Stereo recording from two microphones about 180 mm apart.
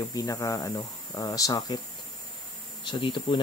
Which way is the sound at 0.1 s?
20° left (ahead or behind).